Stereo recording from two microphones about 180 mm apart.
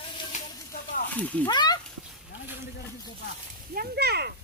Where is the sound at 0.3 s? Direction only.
55° left (ahead or behind).